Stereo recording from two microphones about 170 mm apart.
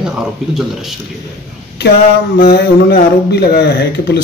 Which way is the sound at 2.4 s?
70° left (ahead or behind).